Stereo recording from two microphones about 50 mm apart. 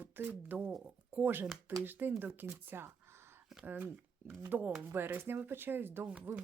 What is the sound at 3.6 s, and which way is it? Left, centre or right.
Speech, right.